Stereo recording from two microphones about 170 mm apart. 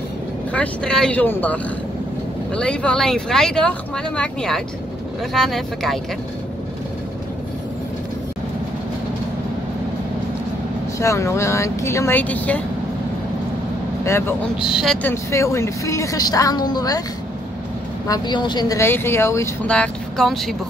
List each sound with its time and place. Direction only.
0.5 s speech: 5° left (ahead or behind)
11.0 s speech: 15° left (ahead or behind)
14.0 s speech: 15° left (ahead or behind)
14.7 s speech: centre (ahead or behind)
15.0 s a woman's voice: 15° left (ahead or behind)
18.0 s a woman's voice: 25° left (ahead or behind)
19.7 s speech: 5° left (ahead or behind)